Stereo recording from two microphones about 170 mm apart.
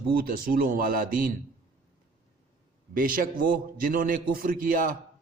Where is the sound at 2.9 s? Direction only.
55° right (ahead or behind).